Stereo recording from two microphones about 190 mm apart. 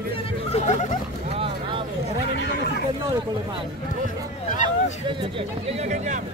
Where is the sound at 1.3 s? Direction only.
25° right (ahead or behind).